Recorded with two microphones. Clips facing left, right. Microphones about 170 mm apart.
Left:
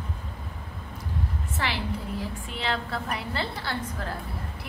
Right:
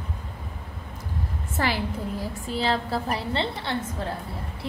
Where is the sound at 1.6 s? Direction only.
40° right (ahead or behind).